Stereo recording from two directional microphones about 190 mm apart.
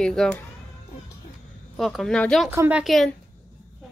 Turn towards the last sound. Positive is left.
turn(degrees=0)  # may be behind; listen again after turning